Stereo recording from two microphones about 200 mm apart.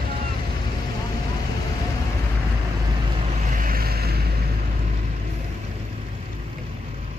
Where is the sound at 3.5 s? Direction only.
45° right (ahead or behind).